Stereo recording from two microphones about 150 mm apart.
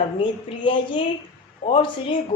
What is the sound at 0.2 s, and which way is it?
Speech, 35° left (ahead or behind).